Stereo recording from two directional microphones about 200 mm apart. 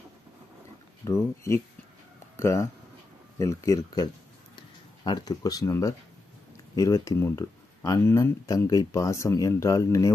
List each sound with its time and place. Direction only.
1.0 s speech: 15° left (ahead or behind)